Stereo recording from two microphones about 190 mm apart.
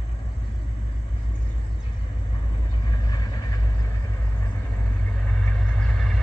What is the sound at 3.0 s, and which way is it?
Vehicle, 20° left (ahead or behind).